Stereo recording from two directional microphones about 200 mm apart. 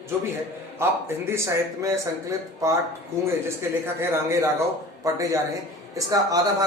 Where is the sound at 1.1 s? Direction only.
10° right (ahead or behind).